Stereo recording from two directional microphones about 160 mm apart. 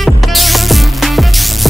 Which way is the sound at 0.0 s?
Centre (ahead or behind).